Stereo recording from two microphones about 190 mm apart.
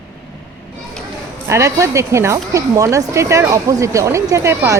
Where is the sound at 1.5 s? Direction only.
15° right (ahead or behind).